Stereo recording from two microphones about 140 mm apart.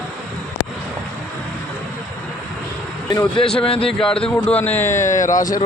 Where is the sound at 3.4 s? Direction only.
5° left (ahead or behind); by 5.6 s 25° left (ahead or behind).